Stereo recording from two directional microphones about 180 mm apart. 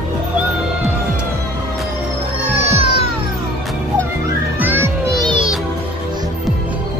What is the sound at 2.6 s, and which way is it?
Music, 35° right (ahead or behind).